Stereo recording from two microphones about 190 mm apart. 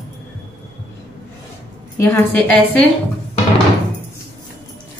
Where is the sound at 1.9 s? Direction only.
10° left (ahead or behind).